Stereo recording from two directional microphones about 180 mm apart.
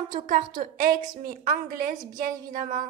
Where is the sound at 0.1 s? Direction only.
50° right (ahead or behind).